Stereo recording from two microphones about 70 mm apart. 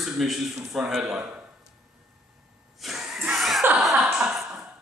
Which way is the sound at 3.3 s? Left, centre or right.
Centre.